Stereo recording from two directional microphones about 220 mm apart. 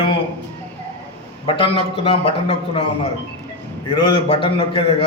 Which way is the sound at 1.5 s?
25° left (ahead or behind).